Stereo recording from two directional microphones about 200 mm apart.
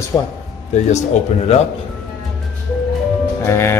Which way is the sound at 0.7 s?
35° left (ahead or behind).